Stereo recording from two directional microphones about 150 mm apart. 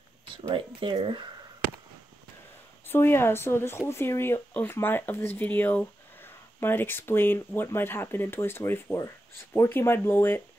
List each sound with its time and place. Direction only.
0.3 s speech: 35° right (ahead or behind)
2.9 s speech: 15° left (ahead or behind)